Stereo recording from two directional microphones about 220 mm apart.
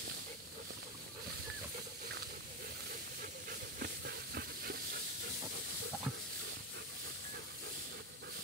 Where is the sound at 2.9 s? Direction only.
40° right (ahead or behind).